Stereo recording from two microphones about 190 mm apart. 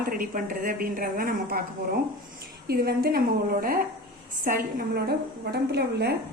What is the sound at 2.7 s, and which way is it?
A woman's voice, 55° right (ahead or behind).